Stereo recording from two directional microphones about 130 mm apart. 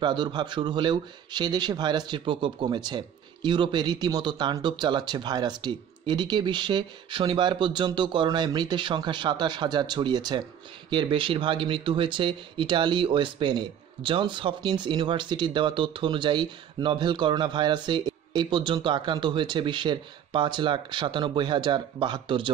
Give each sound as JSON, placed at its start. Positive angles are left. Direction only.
{"t": 0.0, "sound": "speech", "side_deg": -35}